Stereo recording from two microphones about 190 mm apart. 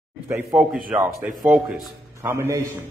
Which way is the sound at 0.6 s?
5° right (ahead or behind).